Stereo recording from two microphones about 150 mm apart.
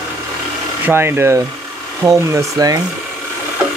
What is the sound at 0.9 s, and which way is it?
Speech, 15° right (ahead or behind).